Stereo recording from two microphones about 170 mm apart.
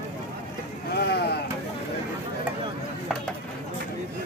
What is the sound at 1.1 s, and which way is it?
Speech, 75° left (ahead or behind).